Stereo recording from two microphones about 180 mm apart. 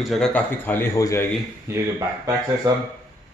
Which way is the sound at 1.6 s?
20° right (ahead or behind).